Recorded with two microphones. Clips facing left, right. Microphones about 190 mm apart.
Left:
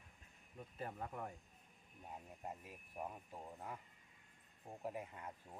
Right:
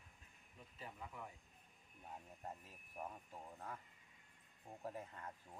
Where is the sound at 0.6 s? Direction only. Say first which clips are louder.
Left 7 dB; 55° left (ahead or behind).